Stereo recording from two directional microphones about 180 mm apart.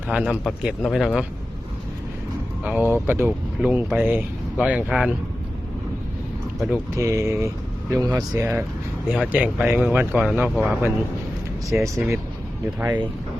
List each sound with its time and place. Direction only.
0.1 s speech: centre (ahead or behind)
2.6 s speech: 10° right (ahead or behind)
6.9 s speech: 15° right (ahead or behind)